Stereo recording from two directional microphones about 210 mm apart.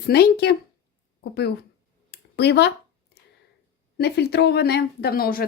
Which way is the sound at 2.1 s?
50° left (ahead or behind).